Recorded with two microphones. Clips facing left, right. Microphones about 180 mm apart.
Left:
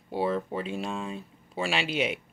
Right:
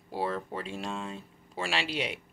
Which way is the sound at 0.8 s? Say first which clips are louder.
Left 3 dB; 10° left (ahead or behind).